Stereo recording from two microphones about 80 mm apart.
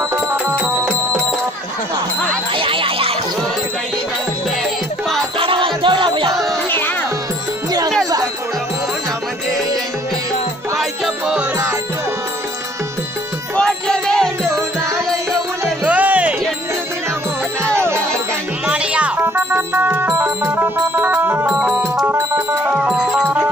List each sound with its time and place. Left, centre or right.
0.1 s music: right
2.5 s music: right
5.5 s music: right
6.7 s music: left
10.8 s music: centre
13.6 s music: centre
15.8 s music: centre
17.7 s music: right
18.7 s music: centre
19.1 s music: right
22.7 s music: centre